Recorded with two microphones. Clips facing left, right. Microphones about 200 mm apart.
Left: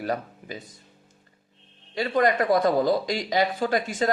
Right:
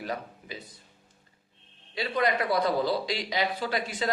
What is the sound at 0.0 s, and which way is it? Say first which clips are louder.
Speech: left 6 dB; 45° left (ahead or behind).